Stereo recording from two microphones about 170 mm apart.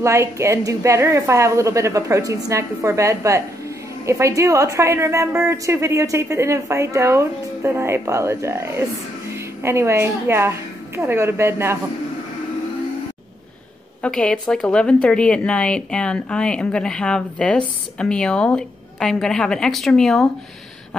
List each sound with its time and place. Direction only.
0.0 s a woman's voice: 15° right (ahead or behind)
14.0 s a woman's voice: 5° left (ahead or behind)